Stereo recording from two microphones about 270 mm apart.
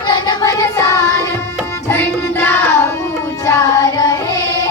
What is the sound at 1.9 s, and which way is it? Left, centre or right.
Music, centre.